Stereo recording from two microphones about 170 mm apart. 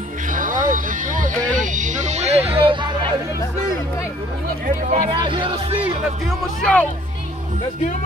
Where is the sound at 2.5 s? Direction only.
30° right (ahead or behind).